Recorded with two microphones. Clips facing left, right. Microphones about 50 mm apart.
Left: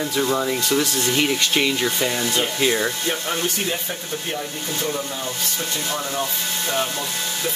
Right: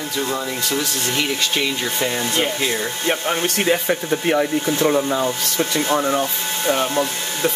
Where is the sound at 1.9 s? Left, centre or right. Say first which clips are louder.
Right 1 dB; centre.